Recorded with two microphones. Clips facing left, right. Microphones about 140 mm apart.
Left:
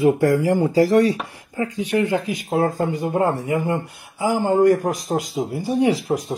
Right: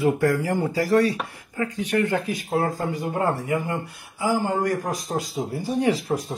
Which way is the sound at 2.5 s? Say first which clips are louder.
Left 4 dB; 25° left (ahead or behind).